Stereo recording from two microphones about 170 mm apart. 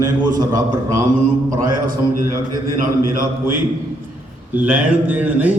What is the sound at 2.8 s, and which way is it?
Speech, 55° right (ahead or behind).